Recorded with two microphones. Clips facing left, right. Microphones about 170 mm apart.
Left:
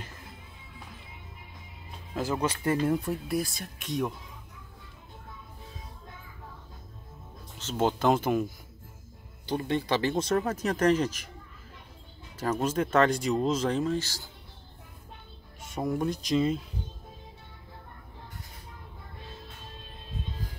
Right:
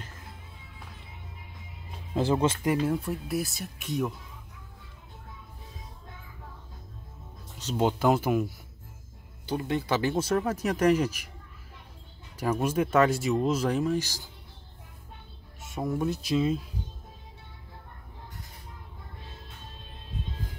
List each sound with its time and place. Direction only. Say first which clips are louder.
2.1 s speech: right 4 dB; 25° right (ahead or behind)
2.7 s speech: even; 5° right (ahead or behind)
7.5 s speech: right 1 dB; 15° right (ahead or behind)
9.5 s speech: even; 5° right (ahead or behind)
12.4 s speech: right 1 dB; 10° right (ahead or behind)
15.6 s speech: even; centre (ahead or behind)